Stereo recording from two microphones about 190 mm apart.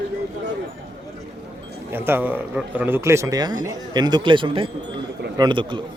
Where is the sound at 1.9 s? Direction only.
10° right (ahead or behind).